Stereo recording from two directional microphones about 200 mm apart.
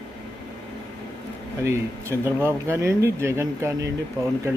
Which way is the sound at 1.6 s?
15° right (ahead or behind).